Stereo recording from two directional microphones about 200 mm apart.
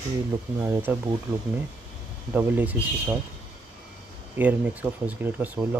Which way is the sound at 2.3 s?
10° right (ahead or behind).